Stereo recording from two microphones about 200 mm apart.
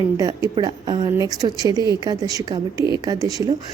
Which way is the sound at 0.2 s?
20° right (ahead or behind).